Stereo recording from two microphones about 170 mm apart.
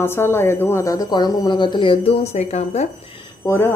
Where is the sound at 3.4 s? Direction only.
15° left (ahead or behind).